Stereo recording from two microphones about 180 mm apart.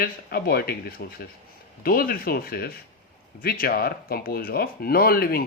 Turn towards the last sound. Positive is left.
turn(degrees=55)  # may be behind; listen again after turning